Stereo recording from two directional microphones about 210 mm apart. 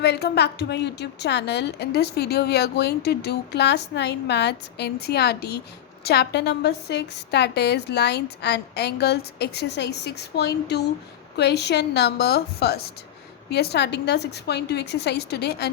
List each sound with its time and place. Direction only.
0.0 s a woman's voice: 50° left (ahead or behind)